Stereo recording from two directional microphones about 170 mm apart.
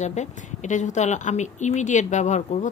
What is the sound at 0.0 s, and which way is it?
A woman's voice, 45° left (ahead or behind).